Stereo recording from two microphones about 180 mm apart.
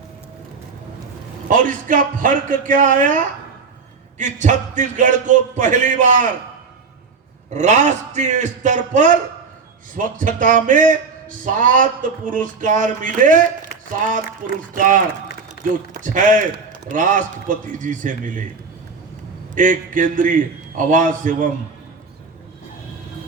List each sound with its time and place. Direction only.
1.5 s speech: 50° right (ahead or behind)
4.2 s speech: 45° right (ahead or behind)
7.5 s speech: 40° right (ahead or behind)
14.7 s speech: 45° right (ahead or behind)
19.5 s speech: 50° right (ahead or behind)